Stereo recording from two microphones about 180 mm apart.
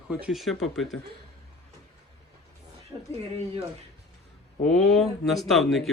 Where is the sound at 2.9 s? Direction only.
25° right (ahead or behind).